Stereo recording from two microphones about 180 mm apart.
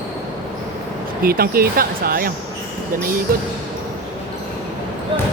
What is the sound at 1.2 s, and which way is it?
Speech, 55° right (ahead or behind).